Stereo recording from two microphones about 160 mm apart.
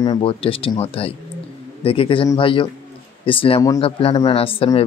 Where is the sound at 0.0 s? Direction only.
30° left (ahead or behind).